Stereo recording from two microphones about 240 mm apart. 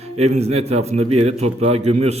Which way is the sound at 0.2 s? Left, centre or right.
Right.